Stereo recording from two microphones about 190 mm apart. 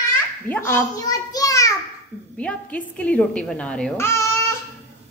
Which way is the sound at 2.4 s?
5° left (ahead or behind).